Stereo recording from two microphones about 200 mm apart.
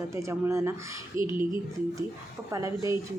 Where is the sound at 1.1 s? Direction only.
25° left (ahead or behind).